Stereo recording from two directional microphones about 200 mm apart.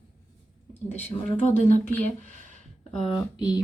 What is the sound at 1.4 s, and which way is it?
Speech, 35° left (ahead or behind).